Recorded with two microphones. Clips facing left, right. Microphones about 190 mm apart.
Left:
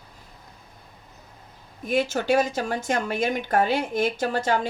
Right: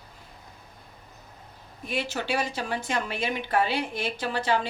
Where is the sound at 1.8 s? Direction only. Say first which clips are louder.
Left 7 dB; 45° left (ahead or behind).